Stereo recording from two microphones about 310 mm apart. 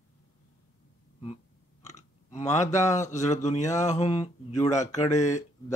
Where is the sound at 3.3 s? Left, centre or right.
Left.